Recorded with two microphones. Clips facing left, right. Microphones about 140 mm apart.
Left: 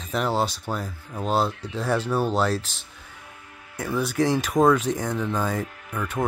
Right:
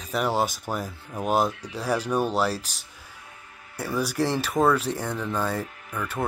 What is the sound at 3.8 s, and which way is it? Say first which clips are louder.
Speech: left 2 dB; 10° right (ahead or behind).